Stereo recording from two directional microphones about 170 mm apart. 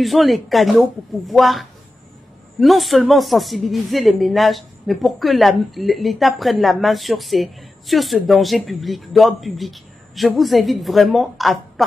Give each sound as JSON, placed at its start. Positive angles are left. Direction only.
{"t": 0.0, "sound": "speech", "side_deg": 0}